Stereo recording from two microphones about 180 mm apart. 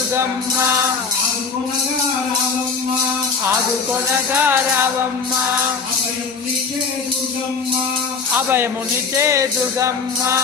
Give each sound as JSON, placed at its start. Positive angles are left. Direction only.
{"t": 4.4, "sound": "music", "side_deg": -10}
{"t": 9.1, "sound": "music", "side_deg": -15}